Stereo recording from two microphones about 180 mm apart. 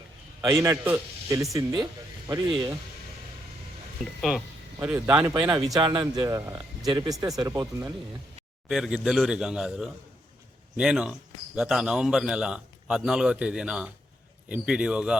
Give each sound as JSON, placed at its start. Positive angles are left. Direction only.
{"t": 0.6, "sound": "a man's voice", "side_deg": -15}
{"t": 4.2, "sound": "a man's voice", "side_deg": 0}
{"t": 4.9, "sound": "a man's voice", "side_deg": -15}
{"t": 5.8, "sound": "speech", "side_deg": -25}
{"t": 8.7, "sound": "a man's voice", "side_deg": 0}